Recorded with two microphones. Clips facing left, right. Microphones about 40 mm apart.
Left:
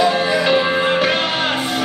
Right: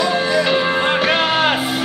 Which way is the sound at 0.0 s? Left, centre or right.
Centre.